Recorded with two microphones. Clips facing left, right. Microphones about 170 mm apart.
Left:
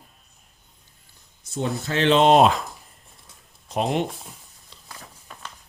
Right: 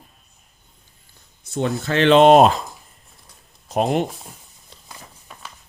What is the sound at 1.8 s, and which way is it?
Speech, 70° right (ahead or behind).